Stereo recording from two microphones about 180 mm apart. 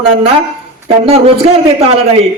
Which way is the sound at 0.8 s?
35° right (ahead or behind).